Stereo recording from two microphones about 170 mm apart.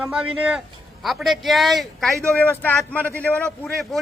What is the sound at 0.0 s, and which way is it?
A man's voice, 5° right (ahead or behind).